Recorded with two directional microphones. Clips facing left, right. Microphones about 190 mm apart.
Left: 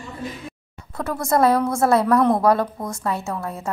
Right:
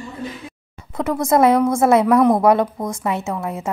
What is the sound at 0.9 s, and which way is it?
A woman's voice, 20° right (ahead or behind).